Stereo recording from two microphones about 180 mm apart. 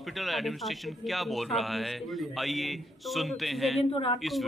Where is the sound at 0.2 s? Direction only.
Centre (ahead or behind).